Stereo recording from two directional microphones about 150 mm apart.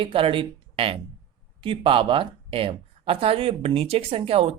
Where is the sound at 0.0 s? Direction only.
35° right (ahead or behind).